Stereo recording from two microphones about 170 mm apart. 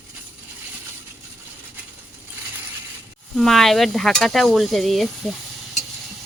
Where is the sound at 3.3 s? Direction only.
Centre (ahead or behind).